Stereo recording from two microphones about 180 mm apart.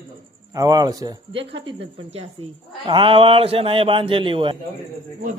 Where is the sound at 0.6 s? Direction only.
20° right (ahead or behind).